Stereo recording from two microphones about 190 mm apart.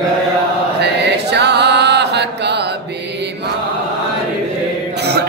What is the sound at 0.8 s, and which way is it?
Chant, 65° right (ahead or behind).